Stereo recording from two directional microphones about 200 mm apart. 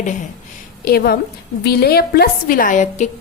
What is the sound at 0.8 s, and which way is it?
A woman's voice, 50° left (ahead or behind).